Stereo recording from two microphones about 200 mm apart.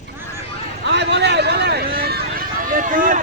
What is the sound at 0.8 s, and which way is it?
Run, 60° right (ahead or behind).